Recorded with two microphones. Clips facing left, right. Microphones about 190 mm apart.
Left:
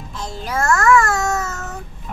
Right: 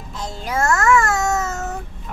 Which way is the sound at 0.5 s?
20° right (ahead or behind).